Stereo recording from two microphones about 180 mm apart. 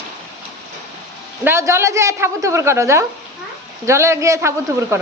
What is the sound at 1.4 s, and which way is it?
A woman's voice, 15° right (ahead or behind).